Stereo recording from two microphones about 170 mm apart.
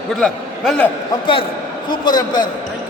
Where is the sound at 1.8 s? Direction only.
25° left (ahead or behind).